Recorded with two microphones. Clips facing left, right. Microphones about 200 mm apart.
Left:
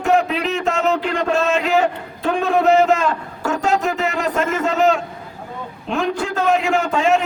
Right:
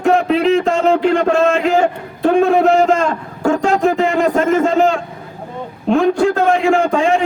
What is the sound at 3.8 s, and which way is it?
Speech, 50° right (ahead or behind).